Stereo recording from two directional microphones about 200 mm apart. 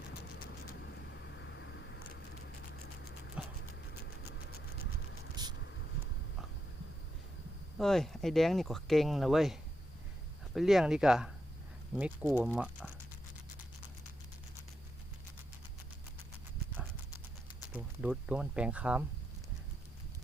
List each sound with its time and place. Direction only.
0.3 s vehicle: 45° left (ahead or behind)
1.5 s vehicle: 65° left (ahead or behind)
3.4 s clip-clop: 5° right (ahead or behind)
5.4 s vehicle: 20° right (ahead or behind)
7.8 s speech: centre (ahead or behind)
17.7 s speech: 5° right (ahead or behind)